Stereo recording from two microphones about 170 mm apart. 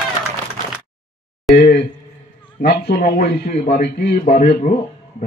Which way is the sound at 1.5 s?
70° left (ahead or behind).